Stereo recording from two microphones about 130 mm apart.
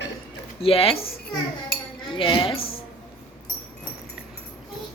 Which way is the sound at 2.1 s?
40° left (ahead or behind).